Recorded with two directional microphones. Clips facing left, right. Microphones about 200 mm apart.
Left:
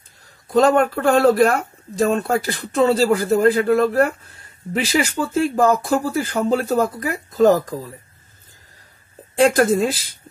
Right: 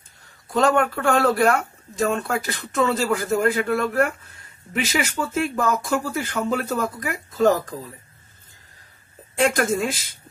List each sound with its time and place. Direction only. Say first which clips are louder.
0.5 s speech: left 4 dB; 40° left (ahead or behind)
9.4 s speech: left 5 dB; 35° left (ahead or behind)